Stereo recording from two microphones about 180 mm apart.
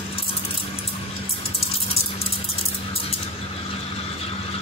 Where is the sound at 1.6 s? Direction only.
35° left (ahead or behind).